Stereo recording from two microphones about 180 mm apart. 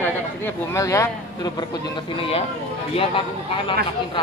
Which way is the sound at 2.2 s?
30° left (ahead or behind).